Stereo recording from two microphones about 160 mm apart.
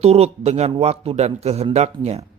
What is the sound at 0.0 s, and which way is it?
Speech, 40° right (ahead or behind).